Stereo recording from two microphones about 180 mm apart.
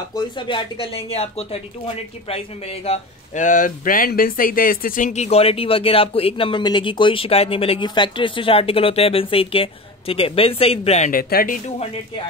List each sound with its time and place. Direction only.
0.1 s speech: 25° left (ahead or behind); by 11.5 s 55° left (ahead or behind)